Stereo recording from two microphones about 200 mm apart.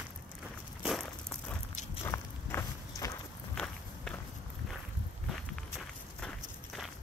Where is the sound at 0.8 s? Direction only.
Centre (ahead or behind).